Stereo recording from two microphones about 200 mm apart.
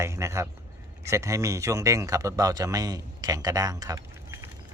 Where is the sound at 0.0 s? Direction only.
15° right (ahead or behind).